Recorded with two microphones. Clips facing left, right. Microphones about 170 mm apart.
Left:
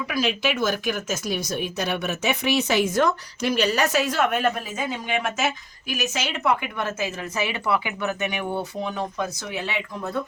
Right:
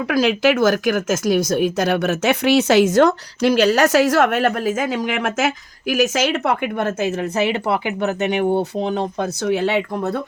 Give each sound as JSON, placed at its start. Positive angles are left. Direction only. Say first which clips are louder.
{"t": 0.0, "sound": "speech", "louder": "right 8 dB", "side_deg": -85}
{"t": 9.2, "sound": "speech", "louder": "right 11 dB", "side_deg": -70}